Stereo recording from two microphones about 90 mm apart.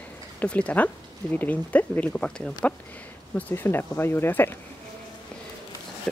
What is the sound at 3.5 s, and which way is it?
Speech, 25° left (ahead or behind).